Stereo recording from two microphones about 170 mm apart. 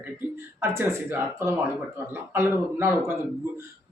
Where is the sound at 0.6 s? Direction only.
15° right (ahead or behind).